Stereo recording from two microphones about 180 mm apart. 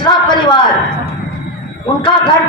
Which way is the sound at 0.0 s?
25° left (ahead or behind).